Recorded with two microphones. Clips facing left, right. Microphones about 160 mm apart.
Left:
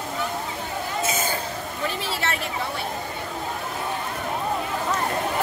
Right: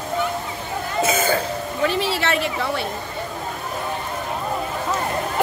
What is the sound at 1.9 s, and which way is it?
Speech, 85° right.